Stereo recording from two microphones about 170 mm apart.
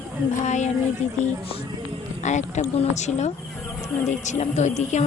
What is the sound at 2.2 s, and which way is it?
Speech, 45° left (ahead or behind).